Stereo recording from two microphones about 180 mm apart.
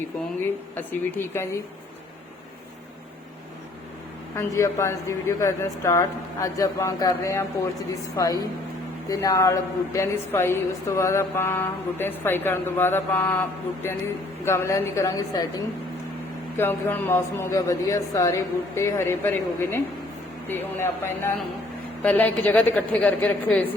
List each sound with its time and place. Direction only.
1.1 s a woman's voice: 15° left (ahead or behind)
4.4 s a woman's voice: 15° left (ahead or behind)
14.4 s a woman's voice: 15° left (ahead or behind)
16.6 s a woman's voice: 10° left (ahead or behind)